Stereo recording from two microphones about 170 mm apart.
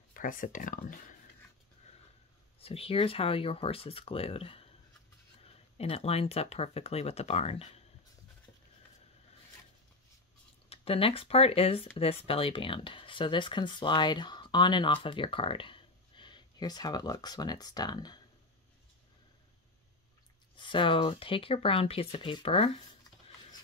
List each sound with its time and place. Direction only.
0.1 s speech: 55° left (ahead or behind)
2.6 s speech: 35° left (ahead or behind)
5.8 s speech: 35° left (ahead or behind)
10.7 s speech: 35° left (ahead or behind)
20.5 s speech: 30° left (ahead or behind)